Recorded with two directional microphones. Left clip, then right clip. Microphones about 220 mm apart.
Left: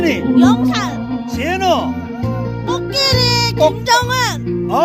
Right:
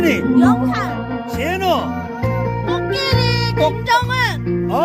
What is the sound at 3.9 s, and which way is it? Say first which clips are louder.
Speech: left 2 dB; 50° left (ahead or behind).